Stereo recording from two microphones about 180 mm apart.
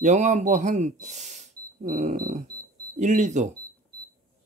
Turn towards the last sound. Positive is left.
turn(degrees=-40)  # may be behind; listen again after turning